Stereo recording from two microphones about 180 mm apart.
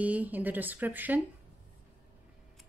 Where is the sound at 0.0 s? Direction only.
10° right (ahead or behind).